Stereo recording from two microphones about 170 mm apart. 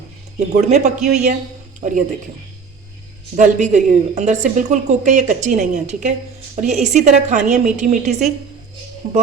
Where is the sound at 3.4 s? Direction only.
45° right (ahead or behind).